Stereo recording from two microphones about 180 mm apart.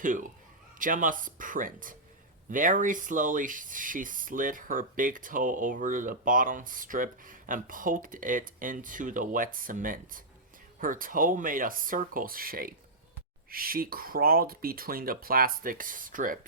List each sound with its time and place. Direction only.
0.0 s speech: 45° right (ahead or behind)